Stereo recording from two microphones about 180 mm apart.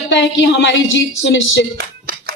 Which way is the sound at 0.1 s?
90° left.